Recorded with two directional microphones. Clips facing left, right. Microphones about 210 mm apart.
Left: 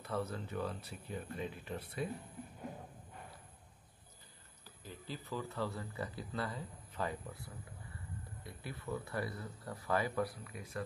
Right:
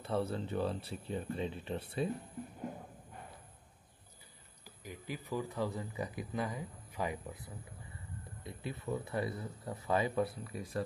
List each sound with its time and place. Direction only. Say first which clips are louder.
0.0 s speech: right 4 dB; 30° right (ahead or behind)
4.6 s speech: right 3 dB; 15° right (ahead or behind); by 10.8 s 30° right (ahead or behind)